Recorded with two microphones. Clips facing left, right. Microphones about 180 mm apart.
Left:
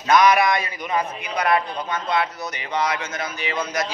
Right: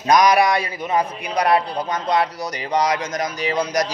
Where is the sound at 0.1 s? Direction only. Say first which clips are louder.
Right 1 dB; 35° right (ahead or behind).